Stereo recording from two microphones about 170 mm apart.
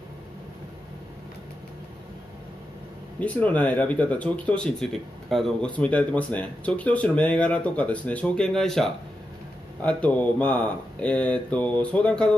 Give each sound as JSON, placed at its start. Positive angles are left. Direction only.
{"t": 3.2, "sound": "speech", "side_deg": 10}